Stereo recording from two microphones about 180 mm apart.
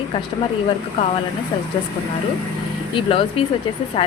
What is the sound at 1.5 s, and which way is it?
Speech, 25° left (ahead or behind).